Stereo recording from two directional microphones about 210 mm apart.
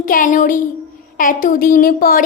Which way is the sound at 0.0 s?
40° left (ahead or behind).